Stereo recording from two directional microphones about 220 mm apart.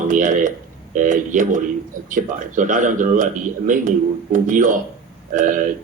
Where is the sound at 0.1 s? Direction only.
35° right (ahead or behind).